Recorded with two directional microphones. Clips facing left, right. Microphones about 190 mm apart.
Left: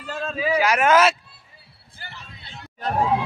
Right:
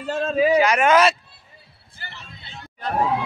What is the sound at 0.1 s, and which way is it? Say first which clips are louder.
Speech: right 8 dB; 45° right (ahead or behind).